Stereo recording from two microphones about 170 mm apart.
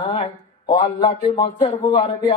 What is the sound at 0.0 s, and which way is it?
Speech, 30° left (ahead or behind).